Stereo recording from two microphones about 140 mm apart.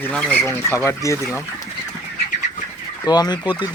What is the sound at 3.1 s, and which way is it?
Speech, 30° left (ahead or behind).